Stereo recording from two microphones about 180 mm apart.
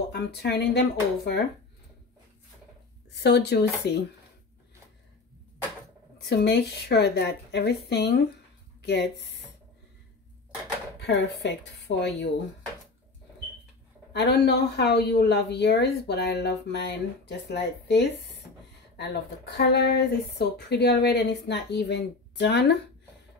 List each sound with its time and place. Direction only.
0.1 s speech: 65° left (ahead or behind)
3.2 s speech: 70° left (ahead or behind)
6.1 s speech: 70° left (ahead or behind)
11.0 s speech: 75° left (ahead or behind)
14.1 s speech: 70° left (ahead or behind)